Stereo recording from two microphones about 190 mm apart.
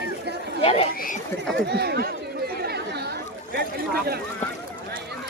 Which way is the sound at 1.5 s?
60° right (ahead or behind).